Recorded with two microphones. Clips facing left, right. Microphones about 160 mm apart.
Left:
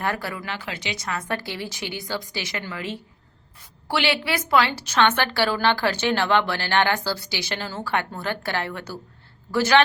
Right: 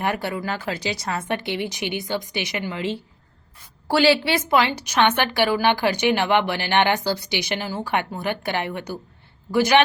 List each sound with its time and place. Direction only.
0.0 s a woman's voice: 20° right (ahead or behind)
0.4 s a woman's voice: 40° right (ahead or behind); by 3.0 s 25° right (ahead or behind)
3.8 s a woman's voice: 40° right (ahead or behind); by 9.8 s 15° right (ahead or behind)